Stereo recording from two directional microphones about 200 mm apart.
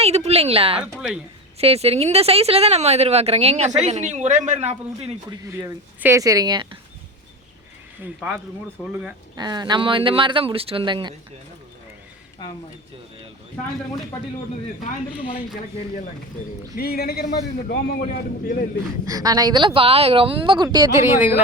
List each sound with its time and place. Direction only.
0.0 s a sound: 30° right (ahead or behind)
0.8 s speech: centre (ahead or behind)
1.5 s speech: 30° right (ahead or behind)
5.5 s speech: 15° right (ahead or behind)
8.0 s speech: 5° right (ahead or behind)
9.3 s speech: 20° right (ahead or behind)
16.7 s speech: 50° left (ahead or behind)
19.0 s speech: 20° right (ahead or behind)